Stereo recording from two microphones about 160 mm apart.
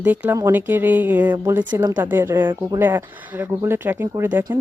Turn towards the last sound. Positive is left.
turn(degrees=-20)  # may be behind; listen again after turning